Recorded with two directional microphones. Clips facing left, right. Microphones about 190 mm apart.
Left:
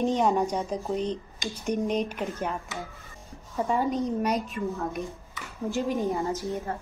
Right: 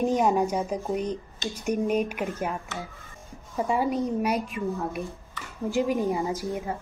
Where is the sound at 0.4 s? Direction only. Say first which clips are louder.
Right 2 dB; 10° right (ahead or behind).